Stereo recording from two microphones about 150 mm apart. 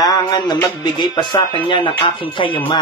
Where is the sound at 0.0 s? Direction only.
25° left (ahead or behind).